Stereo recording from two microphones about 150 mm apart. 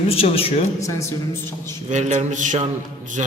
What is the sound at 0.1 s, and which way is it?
Speech, 40° left (ahead or behind).